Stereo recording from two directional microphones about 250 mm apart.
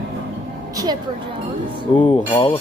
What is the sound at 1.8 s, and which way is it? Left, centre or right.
Music, centre.